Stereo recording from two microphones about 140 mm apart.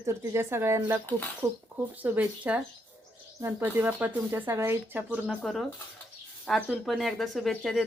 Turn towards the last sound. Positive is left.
turn(degrees=0)  # may be behind; listen again after turning